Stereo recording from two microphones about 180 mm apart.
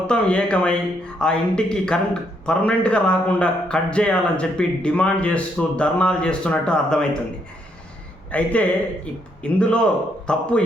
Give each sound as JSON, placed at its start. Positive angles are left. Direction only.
{"t": 0.1, "sound": "a man's voice", "side_deg": 5}
{"t": 8.3, "sound": "a man's voice", "side_deg": 10}